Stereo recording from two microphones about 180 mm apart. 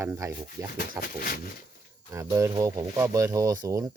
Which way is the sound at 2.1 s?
15° right (ahead or behind).